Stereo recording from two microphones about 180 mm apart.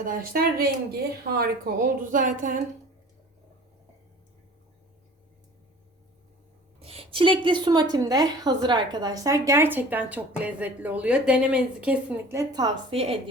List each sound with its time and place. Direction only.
0.0 s speech: 55° right (ahead or behind)
6.7 s a woman's voice: 35° right (ahead or behind)